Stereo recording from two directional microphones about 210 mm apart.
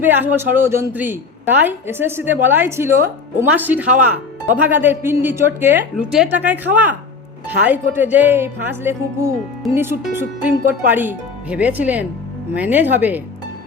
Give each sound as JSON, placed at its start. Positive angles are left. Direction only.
{"t": 0.0, "sound": "a woman's voice", "side_deg": -10}